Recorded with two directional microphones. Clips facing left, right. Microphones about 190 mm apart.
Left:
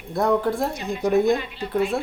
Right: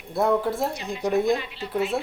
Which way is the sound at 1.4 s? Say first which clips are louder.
Left 3 dB; 50° left (ahead or behind).